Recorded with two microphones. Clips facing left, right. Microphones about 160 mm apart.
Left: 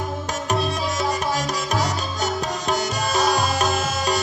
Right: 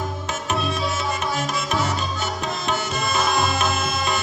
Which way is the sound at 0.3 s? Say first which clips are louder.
Left 2 dB; 40° left (ahead or behind).